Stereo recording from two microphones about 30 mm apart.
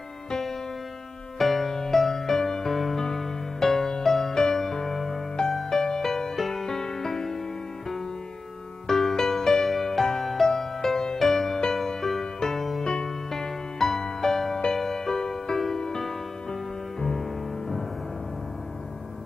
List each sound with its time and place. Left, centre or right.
0.3 s music: centre
1.4 s music: centre
1.7 s music: centre
8.8 s music: centre